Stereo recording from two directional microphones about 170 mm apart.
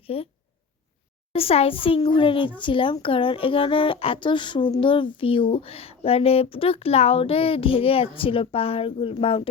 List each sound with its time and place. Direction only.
0.0 s speech: 35° left (ahead or behind)
1.3 s speech: 35° left (ahead or behind)